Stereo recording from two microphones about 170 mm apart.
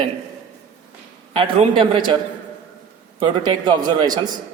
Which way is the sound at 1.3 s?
30° right (ahead or behind).